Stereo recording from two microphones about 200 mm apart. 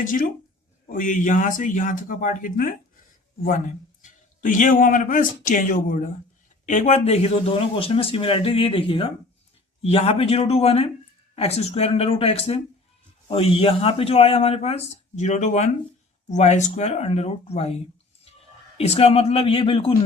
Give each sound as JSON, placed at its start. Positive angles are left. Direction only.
{"t": 0.0, "sound": "speech", "side_deg": 40}
{"t": 4.0, "sound": "a man's voice", "side_deg": 40}
{"t": 18.8, "sound": "a man's voice", "side_deg": 30}